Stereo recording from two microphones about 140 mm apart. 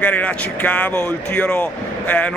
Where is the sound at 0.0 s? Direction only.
10° left (ahead or behind).